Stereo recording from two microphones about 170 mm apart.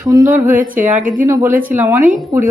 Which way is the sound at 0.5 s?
50° right (ahead or behind).